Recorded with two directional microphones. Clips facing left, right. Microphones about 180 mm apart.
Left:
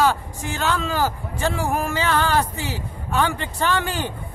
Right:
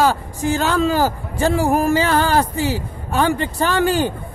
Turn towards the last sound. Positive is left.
turn(degrees=-35)  # may be behind; listen again after turning